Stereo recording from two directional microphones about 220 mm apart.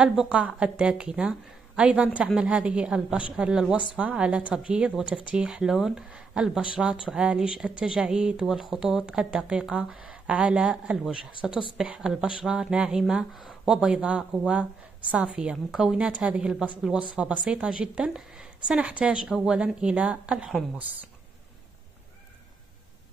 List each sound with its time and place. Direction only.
0.0 s speech: 5° right (ahead or behind)